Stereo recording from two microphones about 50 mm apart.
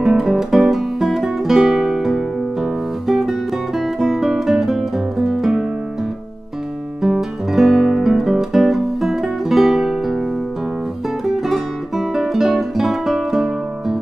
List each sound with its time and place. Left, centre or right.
0.0 s music: centre
7.0 s guitar: centre
11.2 s guitar: centre